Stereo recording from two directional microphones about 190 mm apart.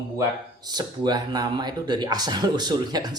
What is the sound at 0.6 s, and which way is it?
Speech, 20° right (ahead or behind).